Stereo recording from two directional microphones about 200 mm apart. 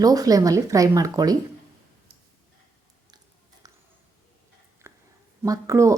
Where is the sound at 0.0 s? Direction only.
20° right (ahead or behind).